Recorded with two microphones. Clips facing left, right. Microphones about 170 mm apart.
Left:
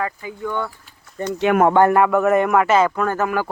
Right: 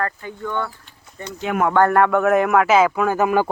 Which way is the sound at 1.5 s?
70° left (ahead or behind).